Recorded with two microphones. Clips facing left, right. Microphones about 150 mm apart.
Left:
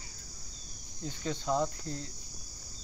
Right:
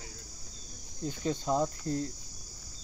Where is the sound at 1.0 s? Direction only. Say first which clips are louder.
Right 4 dB; 45° right (ahead or behind).